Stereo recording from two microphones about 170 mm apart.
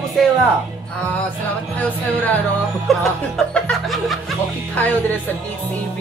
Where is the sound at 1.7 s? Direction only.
10° left (ahead or behind).